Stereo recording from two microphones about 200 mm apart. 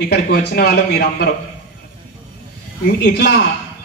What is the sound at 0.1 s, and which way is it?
A man's voice, 50° left (ahead or behind).